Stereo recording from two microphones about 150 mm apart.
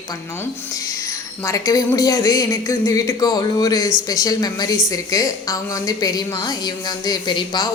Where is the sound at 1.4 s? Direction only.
20° left (ahead or behind).